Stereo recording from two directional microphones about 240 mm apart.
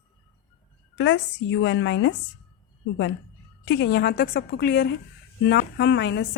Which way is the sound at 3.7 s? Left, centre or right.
Left.